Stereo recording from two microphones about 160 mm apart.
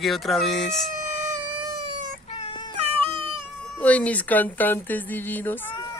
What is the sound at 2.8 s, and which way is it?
Cat, 35° right (ahead or behind).